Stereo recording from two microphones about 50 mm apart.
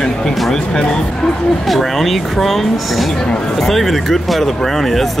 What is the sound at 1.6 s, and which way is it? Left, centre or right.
Speech, centre.